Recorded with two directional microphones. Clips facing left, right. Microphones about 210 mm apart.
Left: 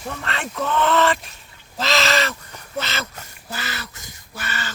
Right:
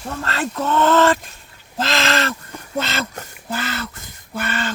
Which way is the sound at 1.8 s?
55° right (ahead or behind).